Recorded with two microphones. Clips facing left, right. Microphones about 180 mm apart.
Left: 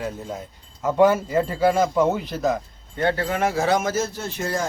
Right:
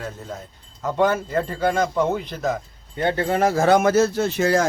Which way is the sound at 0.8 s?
10° left (ahead or behind).